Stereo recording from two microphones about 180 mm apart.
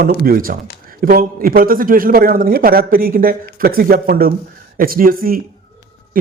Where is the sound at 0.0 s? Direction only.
55° right (ahead or behind).